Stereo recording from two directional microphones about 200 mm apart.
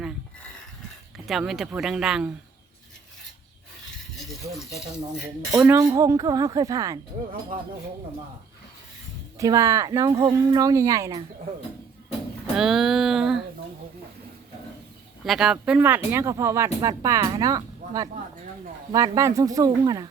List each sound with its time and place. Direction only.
1.3 s speech: centre (ahead or behind)
4.2 s speech: centre (ahead or behind); by 7.0 s 15° right (ahead or behind)
9.4 s speech: 15° right (ahead or behind)
12.5 s speech: centre (ahead or behind)
15.2 s speech: centre (ahead or behind); by 20.1 s 20° right (ahead or behind)